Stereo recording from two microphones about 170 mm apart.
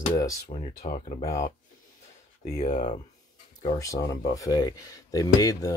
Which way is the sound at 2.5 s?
45° left (ahead or behind).